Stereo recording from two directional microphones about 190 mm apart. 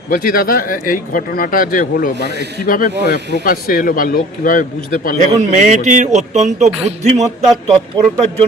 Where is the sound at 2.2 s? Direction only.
60° right (ahead or behind).